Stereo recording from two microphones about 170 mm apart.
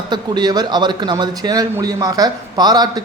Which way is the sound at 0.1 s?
25° right (ahead or behind).